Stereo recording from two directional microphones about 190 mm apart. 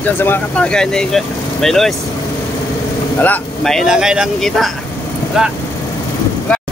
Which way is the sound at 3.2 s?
5° left (ahead or behind).